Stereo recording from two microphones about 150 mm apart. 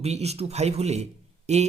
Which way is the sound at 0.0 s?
45° right (ahead or behind).